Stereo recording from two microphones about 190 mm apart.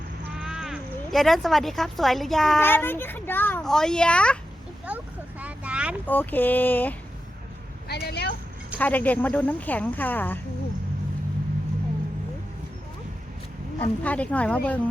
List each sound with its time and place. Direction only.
0.3 s a child's voice: centre (ahead or behind)
5.4 s vehicle: 5° right (ahead or behind)
6.1 s a child's voice: 10° left (ahead or behind)
7.9 s speech: 55° left (ahead or behind)
8.8 s a child's voice: 10° left (ahead or behind)
13.7 s a child's voice: 10° left (ahead or behind)